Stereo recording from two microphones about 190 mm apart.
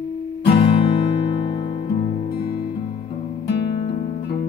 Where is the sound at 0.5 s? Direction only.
30° left (ahead or behind).